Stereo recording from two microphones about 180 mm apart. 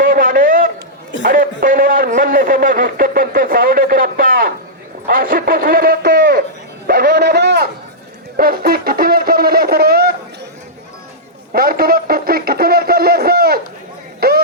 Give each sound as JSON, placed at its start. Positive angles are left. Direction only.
{"t": 0.0, "sound": "a sound", "side_deg": -50}
{"t": 1.2, "sound": "a man's voice", "side_deg": -50}
{"t": 8.4, "sound": "music", "side_deg": -55}
{"t": 11.5, "sound": "speech", "side_deg": -55}
{"t": 14.2, "sound": "music", "side_deg": -60}